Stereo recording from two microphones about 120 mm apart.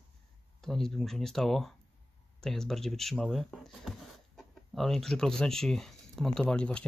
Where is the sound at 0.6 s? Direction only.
5° left (ahead or behind).